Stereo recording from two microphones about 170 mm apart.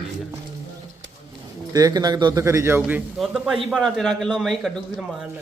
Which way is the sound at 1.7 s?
20° right (ahead or behind).